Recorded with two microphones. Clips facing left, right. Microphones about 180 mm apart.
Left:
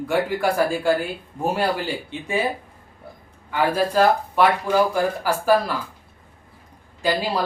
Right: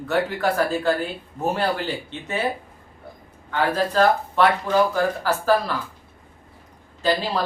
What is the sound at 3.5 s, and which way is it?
Speech, 10° left (ahead or behind).